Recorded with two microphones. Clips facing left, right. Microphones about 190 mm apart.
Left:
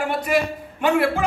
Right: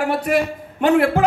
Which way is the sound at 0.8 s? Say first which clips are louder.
Right 4 dB; 50° right (ahead or behind).